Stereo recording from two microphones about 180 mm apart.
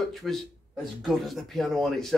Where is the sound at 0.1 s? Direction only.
Centre (ahead or behind).